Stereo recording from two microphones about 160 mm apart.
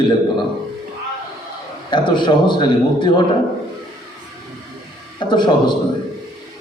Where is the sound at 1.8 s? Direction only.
30° left (ahead or behind).